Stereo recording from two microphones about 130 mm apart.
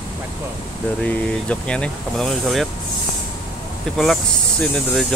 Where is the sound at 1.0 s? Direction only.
10° left (ahead or behind).